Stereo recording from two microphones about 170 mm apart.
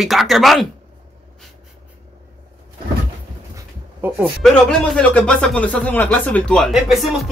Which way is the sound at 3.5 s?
15° right (ahead or behind).